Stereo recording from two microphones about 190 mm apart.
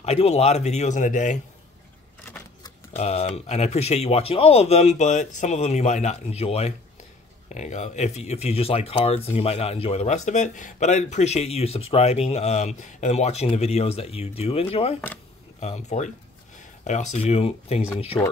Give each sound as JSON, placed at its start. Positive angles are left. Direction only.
{"t": 0.0, "sound": "speech", "side_deg": 35}
{"t": 3.0, "sound": "speech", "side_deg": 35}